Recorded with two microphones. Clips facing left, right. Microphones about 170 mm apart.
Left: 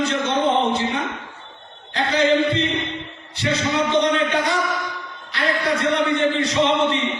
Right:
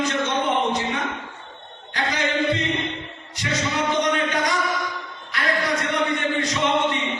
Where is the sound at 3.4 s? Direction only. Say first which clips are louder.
Left 4 dB; 30° left (ahead or behind).